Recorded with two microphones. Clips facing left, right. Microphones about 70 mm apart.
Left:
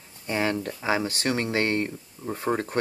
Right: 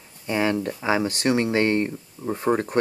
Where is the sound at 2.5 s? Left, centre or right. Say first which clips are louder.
Right 4 dB; centre.